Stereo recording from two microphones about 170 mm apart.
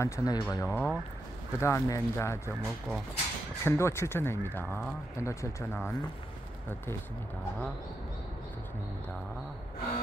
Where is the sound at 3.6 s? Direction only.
15° left (ahead or behind).